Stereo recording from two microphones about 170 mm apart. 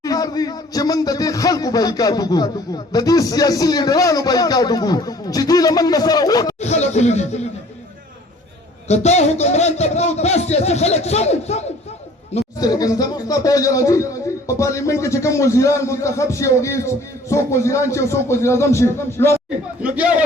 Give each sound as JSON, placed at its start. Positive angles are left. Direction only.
{"t": 0.0, "sound": "speech", "side_deg": 20}
{"t": 6.6, "sound": "a sound", "side_deg": 40}
{"t": 8.9, "sound": "speech", "side_deg": 40}
{"t": 12.5, "sound": "speech", "side_deg": 20}
{"t": 19.8, "sound": "a man's voice", "side_deg": -10}